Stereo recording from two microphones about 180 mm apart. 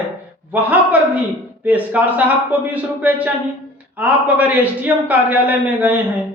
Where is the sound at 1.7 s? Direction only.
10° right (ahead or behind).